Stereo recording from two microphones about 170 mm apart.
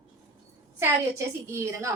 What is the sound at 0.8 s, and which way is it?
A woman's voice, 15° right (ahead or behind).